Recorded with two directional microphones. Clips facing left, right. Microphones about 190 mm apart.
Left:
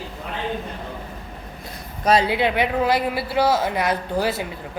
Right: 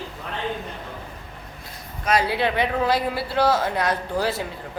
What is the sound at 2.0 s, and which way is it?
Speech, 30° left (ahead or behind).